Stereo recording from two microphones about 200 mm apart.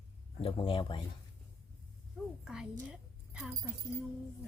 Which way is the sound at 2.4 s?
5° right (ahead or behind).